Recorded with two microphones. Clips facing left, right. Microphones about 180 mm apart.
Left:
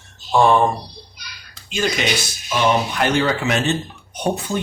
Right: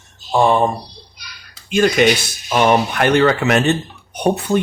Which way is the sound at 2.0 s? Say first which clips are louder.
Right 8 dB; 55° right (ahead or behind).